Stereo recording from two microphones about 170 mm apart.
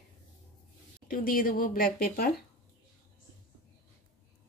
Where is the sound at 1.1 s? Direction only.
55° left (ahead or behind).